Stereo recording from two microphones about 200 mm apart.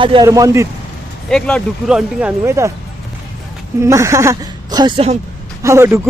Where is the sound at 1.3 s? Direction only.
5° left (ahead or behind); by 2.7 s 15° right (ahead or behind).